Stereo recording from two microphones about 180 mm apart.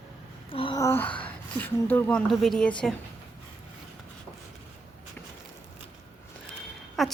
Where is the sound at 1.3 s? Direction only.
10° left (ahead or behind).